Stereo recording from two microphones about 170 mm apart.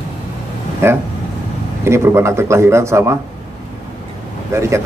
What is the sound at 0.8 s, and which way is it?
A man's voice, 15° right (ahead or behind).